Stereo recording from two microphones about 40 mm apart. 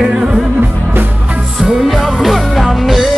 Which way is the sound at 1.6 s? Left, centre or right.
Centre.